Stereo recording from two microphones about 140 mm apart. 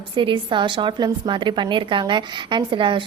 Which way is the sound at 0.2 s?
35° right (ahead or behind).